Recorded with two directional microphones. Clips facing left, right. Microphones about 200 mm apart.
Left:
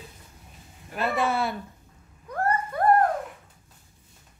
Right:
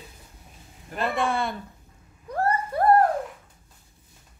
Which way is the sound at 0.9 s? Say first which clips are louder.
Even; 5° left (ahead or behind).